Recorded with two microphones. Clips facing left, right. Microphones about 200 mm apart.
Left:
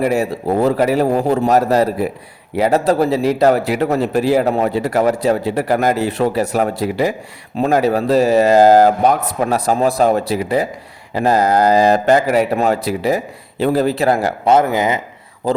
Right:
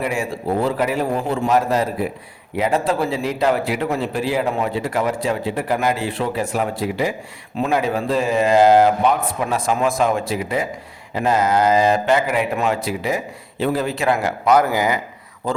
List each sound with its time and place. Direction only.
0.0 s a man's voice: 40° left (ahead or behind)
14.5 s speech: 20° left (ahead or behind)